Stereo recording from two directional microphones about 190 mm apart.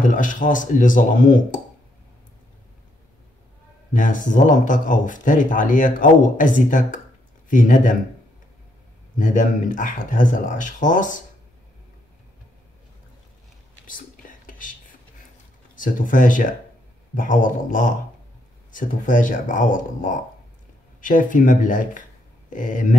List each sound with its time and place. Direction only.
0.0 s speech: 45° left (ahead or behind)
3.9 s speech: 45° left (ahead or behind)
9.2 s speech: 40° left (ahead or behind)
13.8 s whispering: 45° left (ahead or behind)
15.7 s speech: 45° left (ahead or behind)